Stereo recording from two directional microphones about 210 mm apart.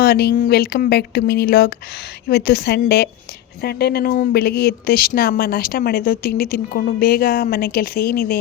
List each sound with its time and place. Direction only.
0.0 s a woman's voice: 50° left (ahead or behind)